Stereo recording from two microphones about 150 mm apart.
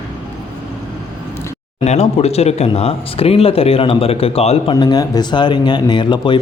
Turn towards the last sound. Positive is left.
turn(degrees=30)  # may be behind; listen again after turning